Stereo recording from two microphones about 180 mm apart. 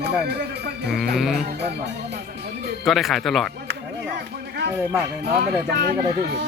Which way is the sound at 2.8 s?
Centre (ahead or behind).